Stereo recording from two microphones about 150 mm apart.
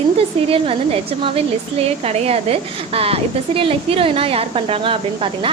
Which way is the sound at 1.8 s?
45° right (ahead or behind).